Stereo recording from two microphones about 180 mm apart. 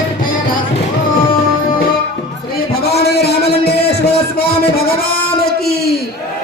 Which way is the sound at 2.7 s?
60° left (ahead or behind).